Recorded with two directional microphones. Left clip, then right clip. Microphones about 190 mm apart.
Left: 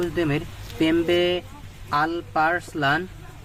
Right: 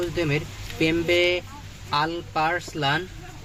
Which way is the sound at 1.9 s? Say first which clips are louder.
Left 2 dB; 60° left (ahead or behind).